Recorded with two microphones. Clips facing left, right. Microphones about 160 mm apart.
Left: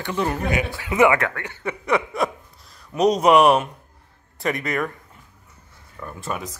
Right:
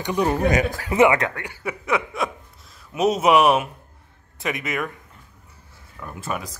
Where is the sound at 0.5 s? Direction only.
40° right (ahead or behind).